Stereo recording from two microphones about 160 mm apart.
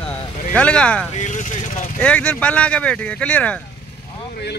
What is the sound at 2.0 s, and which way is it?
Speech, 10° left (ahead or behind).